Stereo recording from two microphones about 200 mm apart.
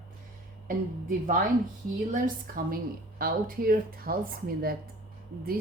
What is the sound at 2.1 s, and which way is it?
Speech, 45° right (ahead or behind).